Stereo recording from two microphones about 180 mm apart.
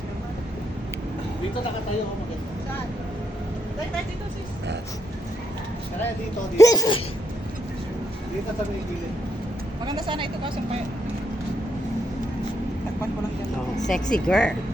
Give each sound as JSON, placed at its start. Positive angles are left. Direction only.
{"t": 6.6, "sound": "speech", "side_deg": 20}
{"t": 9.8, "sound": "speech", "side_deg": -30}
{"t": 13.8, "sound": "speech", "side_deg": 5}